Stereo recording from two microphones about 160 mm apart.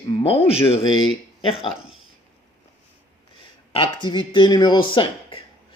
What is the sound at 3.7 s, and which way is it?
Mantra, 30° left (ahead or behind).